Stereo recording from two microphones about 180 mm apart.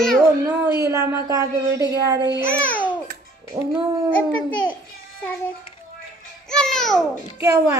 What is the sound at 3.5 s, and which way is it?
Speech, 10° right (ahead or behind).